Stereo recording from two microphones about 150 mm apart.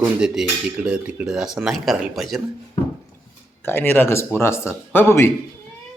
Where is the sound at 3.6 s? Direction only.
15° left (ahead or behind).